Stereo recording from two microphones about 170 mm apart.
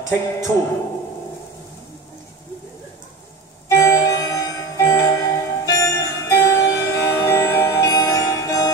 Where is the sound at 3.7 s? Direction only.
15° left (ahead or behind).